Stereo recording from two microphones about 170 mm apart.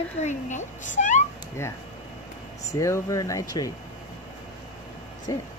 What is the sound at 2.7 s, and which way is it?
Speech, 20° left (ahead or behind).